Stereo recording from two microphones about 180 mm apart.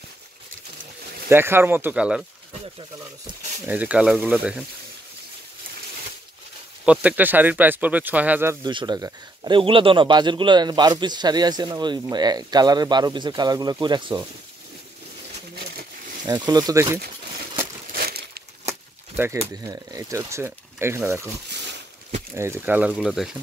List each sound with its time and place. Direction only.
1.3 s speech: 10° right (ahead or behind)
3.6 s speech: 10° right (ahead or behind)
6.8 s speech: 5° right (ahead or behind)
8.6 s speech: 25° right (ahead or behind)
16.3 s speech: 20° right (ahead or behind)
17.9 s a sound: 60° right (ahead or behind)
18.7 s speech: 15° right (ahead or behind)
22.3 s speech: 15° right (ahead or behind)